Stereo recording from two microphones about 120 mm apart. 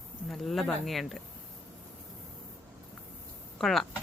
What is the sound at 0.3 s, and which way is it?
Speech, centre (ahead or behind).